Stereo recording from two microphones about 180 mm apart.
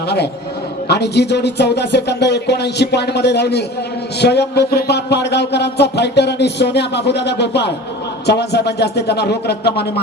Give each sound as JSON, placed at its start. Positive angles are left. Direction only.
{"t": 0.9, "sound": "speech", "side_deg": 70}